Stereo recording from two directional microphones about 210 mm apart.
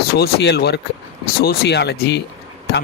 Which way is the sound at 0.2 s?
50° left (ahead or behind).